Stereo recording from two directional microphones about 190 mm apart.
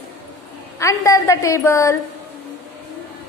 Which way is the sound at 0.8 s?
15° left (ahead or behind).